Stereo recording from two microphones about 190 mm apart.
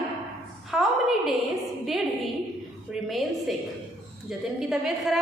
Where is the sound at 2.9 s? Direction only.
Centre (ahead or behind).